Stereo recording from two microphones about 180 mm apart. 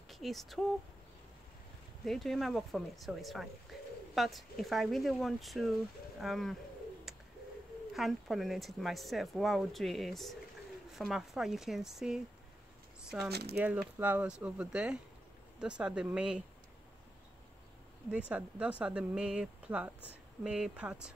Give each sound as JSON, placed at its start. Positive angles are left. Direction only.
{"t": 0.1, "sound": "speech", "side_deg": 0}
{"t": 2.0, "sound": "speech", "side_deg": 0}
{"t": 3.7, "sound": "bird", "side_deg": 0}
{"t": 4.1, "sound": "speech", "side_deg": 0}
{"t": 7.1, "sound": "bird", "side_deg": 0}
{"t": 7.9, "sound": "speech", "side_deg": 0}
{"t": 13.3, "sound": "speech", "side_deg": -65}
{"t": 13.6, "sound": "speech", "side_deg": -10}
{"t": 18.1, "sound": "speech", "side_deg": -5}